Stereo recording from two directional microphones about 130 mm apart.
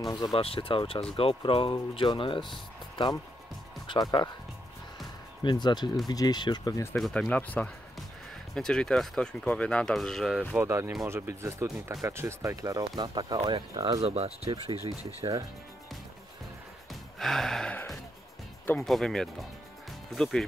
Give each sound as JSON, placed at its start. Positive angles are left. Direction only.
{"t": 0.1, "sound": "speech", "side_deg": 40}
{"t": 5.4, "sound": "speech", "side_deg": 35}
{"t": 7.0, "sound": "speech", "side_deg": 5}
{"t": 10.6, "sound": "speech", "side_deg": -25}
{"t": 14.0, "sound": "speech", "side_deg": -50}
{"t": 17.2, "sound": "gasp", "side_deg": 5}
{"t": 18.9, "sound": "speech", "side_deg": 0}